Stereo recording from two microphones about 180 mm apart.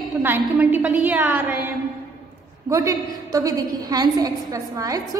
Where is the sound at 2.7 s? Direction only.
20° right (ahead or behind).